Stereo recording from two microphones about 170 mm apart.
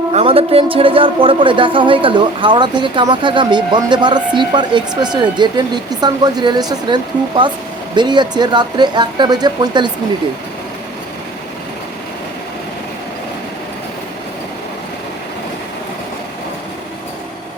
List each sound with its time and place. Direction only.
0.1 s speech: 35° right (ahead or behind)